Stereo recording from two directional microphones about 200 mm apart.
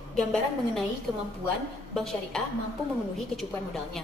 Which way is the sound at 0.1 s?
Centre (ahead or behind).